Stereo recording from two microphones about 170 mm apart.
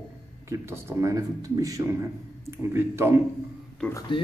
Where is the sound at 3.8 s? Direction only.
5° left (ahead or behind).